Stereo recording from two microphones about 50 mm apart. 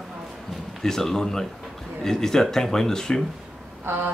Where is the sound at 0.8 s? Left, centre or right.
Centre.